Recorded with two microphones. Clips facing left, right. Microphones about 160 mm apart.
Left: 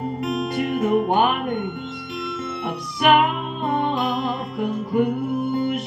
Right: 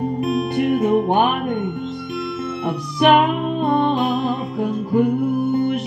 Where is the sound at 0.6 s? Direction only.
20° right (ahead or behind).